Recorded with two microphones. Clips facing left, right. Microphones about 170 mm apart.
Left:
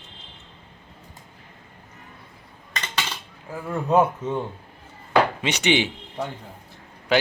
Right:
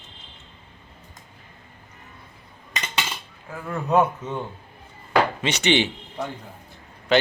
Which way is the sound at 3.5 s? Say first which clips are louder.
Left 2 dB; 15° left (ahead or behind).